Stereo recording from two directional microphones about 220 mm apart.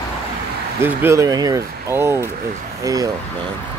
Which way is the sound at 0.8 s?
10° right (ahead or behind).